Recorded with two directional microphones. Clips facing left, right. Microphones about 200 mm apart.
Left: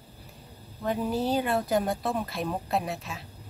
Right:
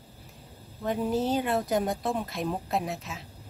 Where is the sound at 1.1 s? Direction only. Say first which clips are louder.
Even; 20° right (ahead or behind).